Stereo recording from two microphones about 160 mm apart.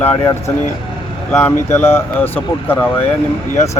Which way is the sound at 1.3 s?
15° left (ahead or behind).